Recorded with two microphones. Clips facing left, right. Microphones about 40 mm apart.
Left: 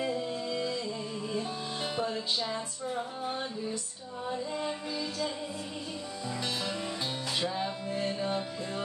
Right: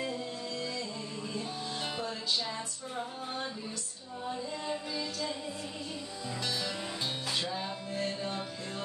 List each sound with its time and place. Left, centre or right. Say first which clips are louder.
0.0 s music: left 4 dB; left
2.3 s a sound: left 2 dB; centre
6.4 s music: left 1 dB; centre